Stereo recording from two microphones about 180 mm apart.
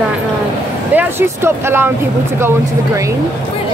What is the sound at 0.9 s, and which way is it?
Speech, 10° right (ahead or behind).